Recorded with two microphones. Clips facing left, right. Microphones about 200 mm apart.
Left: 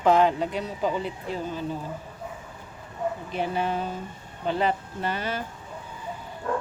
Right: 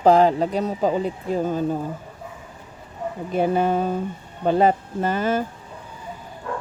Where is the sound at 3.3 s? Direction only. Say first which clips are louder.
Right 10 dB; 45° right (ahead or behind).